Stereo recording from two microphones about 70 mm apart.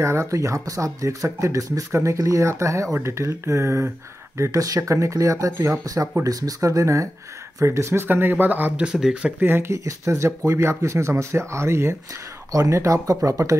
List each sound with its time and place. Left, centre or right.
0.0 s speech: right
4.4 s speech: right
8.8 s speech: centre
9.4 s speech: right
9.8 s speech: right